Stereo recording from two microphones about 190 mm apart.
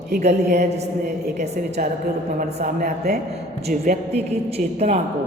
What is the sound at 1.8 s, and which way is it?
Speech, 50° right (ahead or behind).